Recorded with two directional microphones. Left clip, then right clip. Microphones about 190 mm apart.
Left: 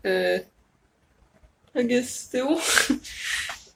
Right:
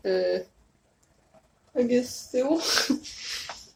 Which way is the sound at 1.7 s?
10° left (ahead or behind).